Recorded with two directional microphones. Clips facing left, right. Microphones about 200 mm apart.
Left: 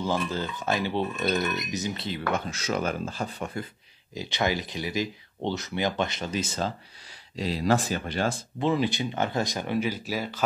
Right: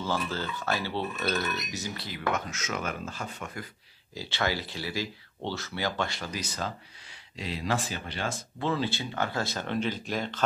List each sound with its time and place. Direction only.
0.0 s speech: 15° left (ahead or behind); by 3.6 s 35° left (ahead or behind)
4.1 s speech: 20° left (ahead or behind)
7.3 s speech: 35° left (ahead or behind)
8.5 s speech: 15° left (ahead or behind)